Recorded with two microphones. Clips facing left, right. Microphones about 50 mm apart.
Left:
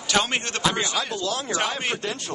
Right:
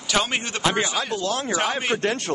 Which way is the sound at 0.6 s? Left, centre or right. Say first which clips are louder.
Right 3 dB; right.